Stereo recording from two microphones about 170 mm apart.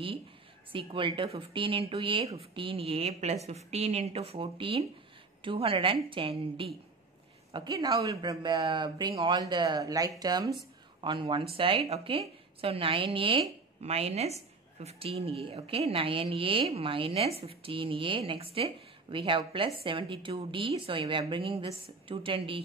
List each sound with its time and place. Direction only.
0.7 s a woman's voice: 30° right (ahead or behind)